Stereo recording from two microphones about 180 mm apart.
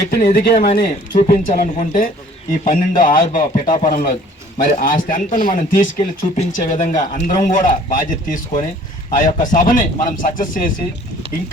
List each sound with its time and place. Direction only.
0.1 s a man's voice: 55° left (ahead or behind)